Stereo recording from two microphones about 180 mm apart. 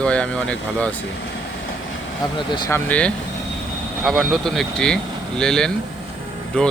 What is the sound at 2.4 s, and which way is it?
Speech, 25° left (ahead or behind).